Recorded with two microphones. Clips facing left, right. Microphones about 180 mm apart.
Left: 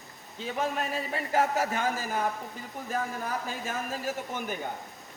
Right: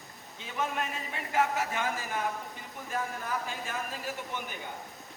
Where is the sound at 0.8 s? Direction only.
40° left (ahead or behind).